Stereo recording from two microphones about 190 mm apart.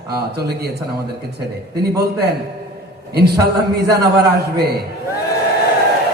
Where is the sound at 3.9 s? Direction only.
60° right (ahead or behind).